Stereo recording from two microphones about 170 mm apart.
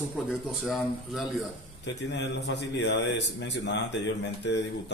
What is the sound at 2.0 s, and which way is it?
A man's voice, 90° left.